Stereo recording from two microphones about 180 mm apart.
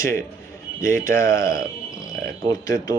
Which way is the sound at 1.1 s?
50° right (ahead or behind).